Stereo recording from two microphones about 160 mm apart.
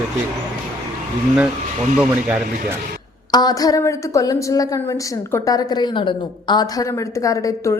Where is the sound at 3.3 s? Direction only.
25° left (ahead or behind).